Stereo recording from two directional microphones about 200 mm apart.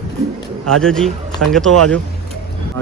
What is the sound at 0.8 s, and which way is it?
A man's voice, 5° left (ahead or behind).